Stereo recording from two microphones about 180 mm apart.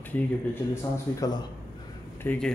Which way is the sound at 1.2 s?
25° left (ahead or behind).